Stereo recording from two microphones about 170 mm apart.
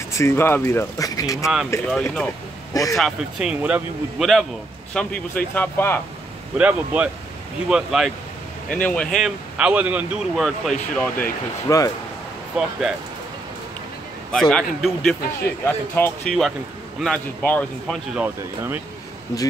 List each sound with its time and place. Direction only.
0.1 s speech: 15° left (ahead or behind)
1.4 s a man's voice: centre (ahead or behind)
2.7 s speech: 20° left (ahead or behind)
3.0 s a man's voice: 5° right (ahead or behind); by 5.9 s 10° left (ahead or behind)
6.6 s a man's voice: 10° right (ahead or behind)
10.3 s a man's voice: centre (ahead or behind)
11.0 s speech: 15° left (ahead or behind)
12.6 s a man's voice: 5° right (ahead or behind)
14.3 s a man's voice: 5° left (ahead or behind)
18.1 s speech: 10° right (ahead or behind)